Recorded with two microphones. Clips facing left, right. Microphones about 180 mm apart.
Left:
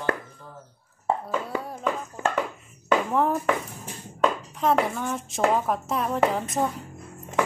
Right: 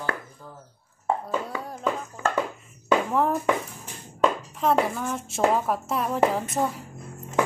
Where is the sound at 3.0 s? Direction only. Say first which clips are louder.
Even; centre (ahead or behind).